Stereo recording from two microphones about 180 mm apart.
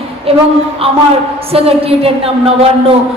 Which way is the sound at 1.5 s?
35° right (ahead or behind).